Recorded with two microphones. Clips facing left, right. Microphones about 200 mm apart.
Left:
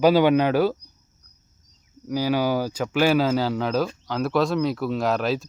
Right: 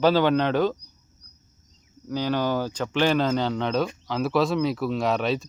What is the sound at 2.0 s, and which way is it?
Speech, 10° left (ahead or behind).